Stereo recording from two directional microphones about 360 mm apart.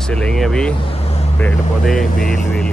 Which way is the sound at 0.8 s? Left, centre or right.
Centre.